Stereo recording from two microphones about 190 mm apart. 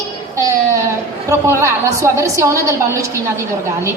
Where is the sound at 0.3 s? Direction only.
15° right (ahead or behind).